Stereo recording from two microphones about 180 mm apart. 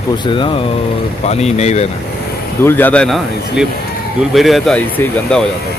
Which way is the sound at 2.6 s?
10° left (ahead or behind).